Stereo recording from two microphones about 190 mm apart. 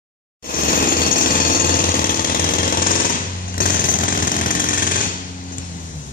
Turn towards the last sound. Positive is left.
turn(degrees=45)  # may be behind; listen again after turning